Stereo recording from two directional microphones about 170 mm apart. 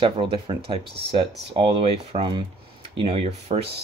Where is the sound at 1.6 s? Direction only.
30° right (ahead or behind).